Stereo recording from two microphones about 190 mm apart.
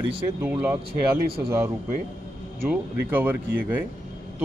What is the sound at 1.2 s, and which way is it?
Speech, 55° right (ahead or behind).